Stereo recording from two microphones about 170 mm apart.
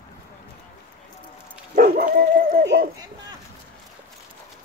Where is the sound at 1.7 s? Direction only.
55° right (ahead or behind).